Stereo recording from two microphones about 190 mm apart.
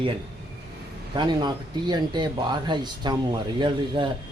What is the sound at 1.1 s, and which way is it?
Speech, 25° right (ahead or behind).